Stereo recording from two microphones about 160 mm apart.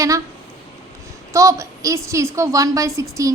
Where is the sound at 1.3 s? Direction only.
20° right (ahead or behind).